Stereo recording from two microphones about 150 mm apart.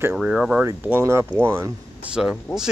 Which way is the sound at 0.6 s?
15° right (ahead or behind).